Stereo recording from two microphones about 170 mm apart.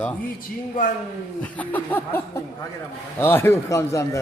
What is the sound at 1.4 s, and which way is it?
A man's voice, 10° left (ahead or behind).